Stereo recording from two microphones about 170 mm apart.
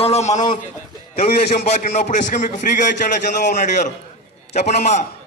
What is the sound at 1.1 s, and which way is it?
A man's voice, 60° left (ahead or behind).